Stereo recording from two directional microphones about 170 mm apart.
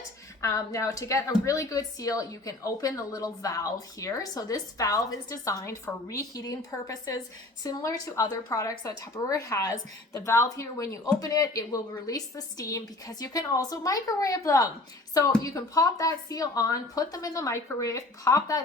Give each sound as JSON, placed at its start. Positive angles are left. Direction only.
{"t": 0.4, "sound": "a woman's voice", "side_deg": 20}